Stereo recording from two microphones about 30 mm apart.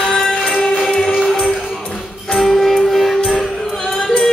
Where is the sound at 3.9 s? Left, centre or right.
Left.